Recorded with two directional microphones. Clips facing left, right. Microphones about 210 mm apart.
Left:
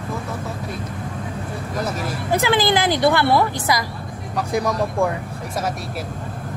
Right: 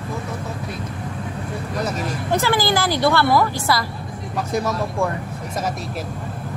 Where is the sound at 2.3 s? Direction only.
15° left (ahead or behind).